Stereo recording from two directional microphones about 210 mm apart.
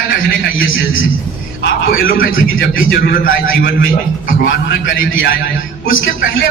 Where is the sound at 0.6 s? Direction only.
70° left (ahead or behind).